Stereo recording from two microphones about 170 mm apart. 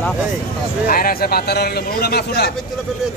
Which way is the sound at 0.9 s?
60° left (ahead or behind).